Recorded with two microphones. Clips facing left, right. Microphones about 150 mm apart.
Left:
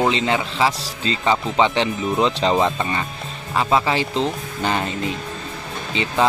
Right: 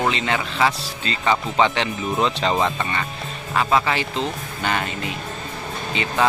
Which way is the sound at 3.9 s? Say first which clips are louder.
Left 3 dB; 30° left (ahead or behind).